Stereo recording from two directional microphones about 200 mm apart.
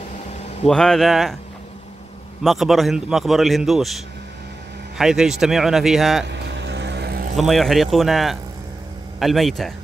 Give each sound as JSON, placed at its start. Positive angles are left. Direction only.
{"t": 0.7, "sound": "a man's voice", "side_deg": 5}
{"t": 2.4, "sound": "a man's voice", "side_deg": 0}
{"t": 6.3, "sound": "vehicle", "side_deg": -60}
{"t": 7.3, "sound": "a man's voice", "side_deg": 0}